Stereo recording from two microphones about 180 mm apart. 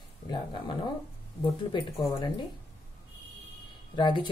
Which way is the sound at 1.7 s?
25° left (ahead or behind).